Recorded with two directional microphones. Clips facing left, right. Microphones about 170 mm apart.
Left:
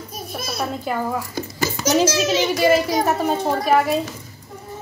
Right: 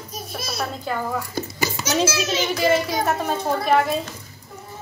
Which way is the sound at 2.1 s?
40° left (ahead or behind).